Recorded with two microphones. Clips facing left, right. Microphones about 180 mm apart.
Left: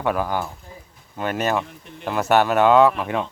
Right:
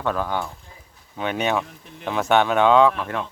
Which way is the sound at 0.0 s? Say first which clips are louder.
Left 2 dB; 10° left (ahead or behind).